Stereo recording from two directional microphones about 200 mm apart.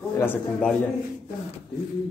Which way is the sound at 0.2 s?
5° left (ahead or behind).